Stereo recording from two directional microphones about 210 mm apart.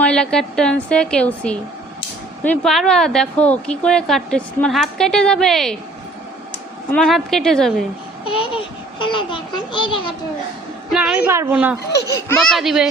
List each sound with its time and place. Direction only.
0.0 s speech: 5° left (ahead or behind)
6.9 s speech: centre (ahead or behind)
8.2 s a child's voice: 25° left (ahead or behind)
10.9 s a woman's voice: 5° right (ahead or behind)
12.1 s speech: 5° left (ahead or behind)